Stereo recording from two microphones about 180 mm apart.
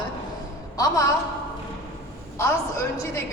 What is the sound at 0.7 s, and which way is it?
Speech, 20° left (ahead or behind).